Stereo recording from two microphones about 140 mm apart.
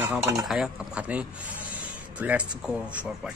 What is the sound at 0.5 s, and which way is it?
A man's voice, 5° right (ahead or behind).